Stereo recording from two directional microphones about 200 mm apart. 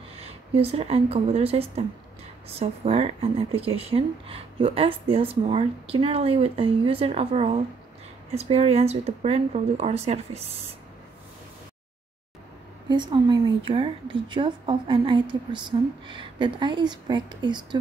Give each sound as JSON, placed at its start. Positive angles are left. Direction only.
{"t": 0.2, "sound": "a woman's voice", "side_deg": -30}
{"t": 12.9, "sound": "speech", "side_deg": -20}